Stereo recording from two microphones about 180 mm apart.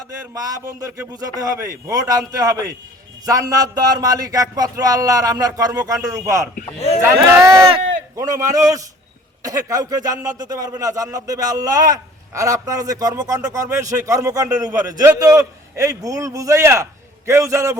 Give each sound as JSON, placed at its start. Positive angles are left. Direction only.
{"t": 0.3, "sound": "speech", "side_deg": -20}
{"t": 6.7, "sound": "speech", "side_deg": 35}
{"t": 7.0, "sound": "a man's voice", "side_deg": -15}